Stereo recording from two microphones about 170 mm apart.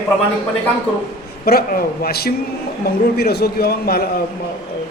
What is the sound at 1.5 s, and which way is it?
A man's voice, 60° left (ahead or behind).